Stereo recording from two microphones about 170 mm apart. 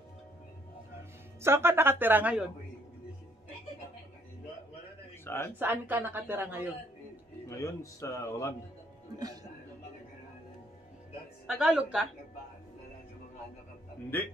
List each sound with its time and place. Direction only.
1.4 s a woman's voice: 15° right (ahead or behind)
5.2 s speech: 15° left (ahead or behind)
5.6 s a woman's voice: 10° right (ahead or behind)
7.4 s a man's voice: 15° left (ahead or behind)
11.4 s a woman's voice: 5° right (ahead or behind)